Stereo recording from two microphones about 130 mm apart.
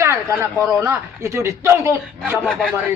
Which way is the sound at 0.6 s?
20° right (ahead or behind).